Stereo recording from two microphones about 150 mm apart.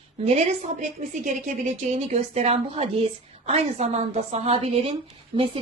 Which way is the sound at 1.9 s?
45° right (ahead or behind).